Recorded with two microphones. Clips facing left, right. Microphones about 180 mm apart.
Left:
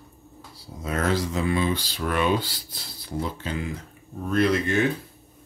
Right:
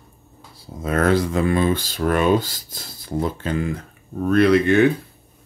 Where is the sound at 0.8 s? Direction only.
55° right (ahead or behind).